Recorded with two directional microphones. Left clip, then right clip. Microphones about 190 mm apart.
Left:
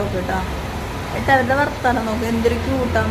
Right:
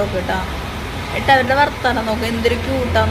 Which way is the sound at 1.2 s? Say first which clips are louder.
Right 3 dB; 15° left (ahead or behind).